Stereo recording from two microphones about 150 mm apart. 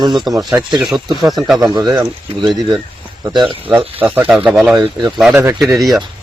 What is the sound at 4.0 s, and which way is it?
Speech, 10° right (ahead or behind).